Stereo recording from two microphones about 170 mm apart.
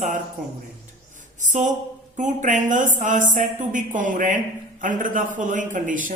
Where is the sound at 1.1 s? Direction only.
45° right (ahead or behind).